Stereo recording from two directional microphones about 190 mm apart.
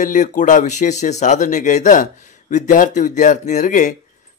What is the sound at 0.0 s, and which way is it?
A man's voice, 40° left (ahead or behind).